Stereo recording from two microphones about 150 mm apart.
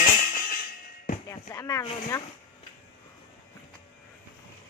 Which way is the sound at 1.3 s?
20° left (ahead or behind).